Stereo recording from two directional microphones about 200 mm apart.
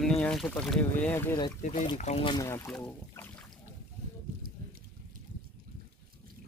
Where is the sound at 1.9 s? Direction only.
35° left (ahead or behind); by 3.2 s 10° left (ahead or behind).